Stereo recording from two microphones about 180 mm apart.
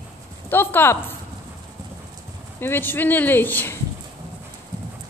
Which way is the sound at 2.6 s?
10° left (ahead or behind).